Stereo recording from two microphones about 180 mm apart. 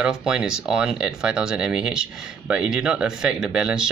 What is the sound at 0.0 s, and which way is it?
Speech, 5° right (ahead or behind).